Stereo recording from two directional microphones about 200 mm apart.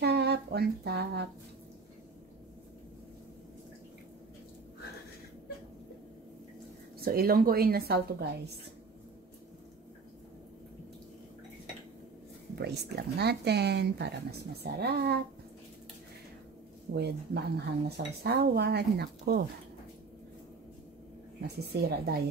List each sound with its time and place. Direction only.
0.0 s a sound: 55° right (ahead or behind)
7.0 s a woman's voice: 50° right (ahead or behind)
13.2 s speech: 55° right (ahead or behind)
16.9 s speech: 55° right (ahead or behind)
21.4 s a woman's voice: 50° right (ahead or behind)